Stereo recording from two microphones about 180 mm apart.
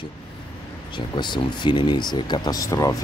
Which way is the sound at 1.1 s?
25° left (ahead or behind).